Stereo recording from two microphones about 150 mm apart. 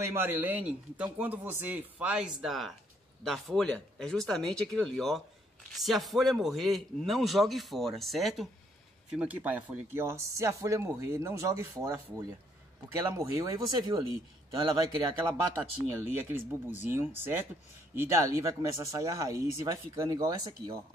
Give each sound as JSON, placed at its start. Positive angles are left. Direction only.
{"t": 0.1, "sound": "a man's voice", "side_deg": -15}
{"t": 15.2, "sound": "speech", "side_deg": -15}